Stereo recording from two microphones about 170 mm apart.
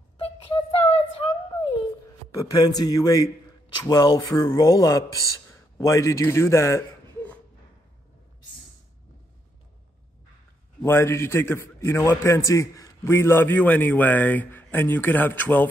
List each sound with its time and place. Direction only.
0.2 s a sound: 35° left (ahead or behind)
2.3 s a man's voice: 20° left (ahead or behind)
10.8 s a man's voice: 15° left (ahead or behind)